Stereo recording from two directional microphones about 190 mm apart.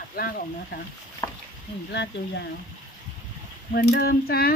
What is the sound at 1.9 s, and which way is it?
Speech, 65° left (ahead or behind).